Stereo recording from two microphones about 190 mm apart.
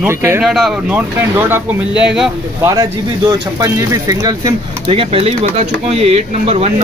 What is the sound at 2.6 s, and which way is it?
Speech, 15° right (ahead or behind).